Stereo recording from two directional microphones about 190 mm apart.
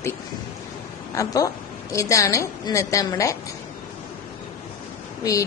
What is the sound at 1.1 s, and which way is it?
A woman's voice, 20° left (ahead or behind).